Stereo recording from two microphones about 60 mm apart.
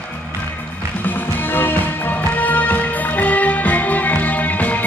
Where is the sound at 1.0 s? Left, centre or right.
Left.